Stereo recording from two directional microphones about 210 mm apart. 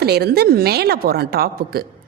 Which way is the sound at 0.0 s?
50° right (ahead or behind).